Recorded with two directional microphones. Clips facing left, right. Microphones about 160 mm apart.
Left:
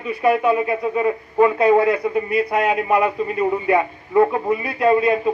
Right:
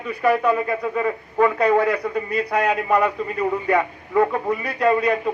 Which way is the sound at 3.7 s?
20° left (ahead or behind).